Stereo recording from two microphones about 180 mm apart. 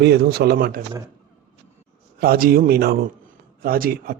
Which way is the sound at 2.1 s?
55° right (ahead or behind).